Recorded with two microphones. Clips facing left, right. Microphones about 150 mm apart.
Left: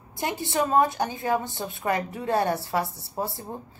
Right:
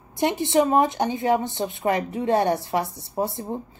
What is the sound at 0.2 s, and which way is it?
Speech, 20° right (ahead or behind).